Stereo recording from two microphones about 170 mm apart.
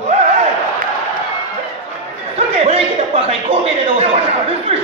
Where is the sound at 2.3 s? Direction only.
35° right (ahead or behind).